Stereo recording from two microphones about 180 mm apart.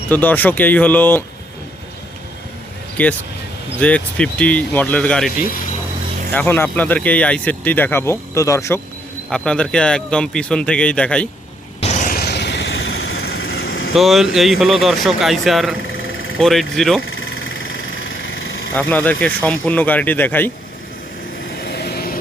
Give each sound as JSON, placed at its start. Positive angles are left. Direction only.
{"t": 0.1, "sound": "speech", "side_deg": 10}
{"t": 3.0, "sound": "speech", "side_deg": 10}
{"t": 6.3, "sound": "speech", "side_deg": 10}
{"t": 9.3, "sound": "a man's voice", "side_deg": 5}
{"t": 11.8, "sound": "vehicle", "side_deg": 40}
{"t": 13.9, "sound": "a man's voice", "side_deg": 0}
{"t": 17.1, "sound": "vehicle", "side_deg": 90}
{"t": 18.7, "sound": "speech", "side_deg": 10}
{"t": 21.5, "sound": "vehicle", "side_deg": 60}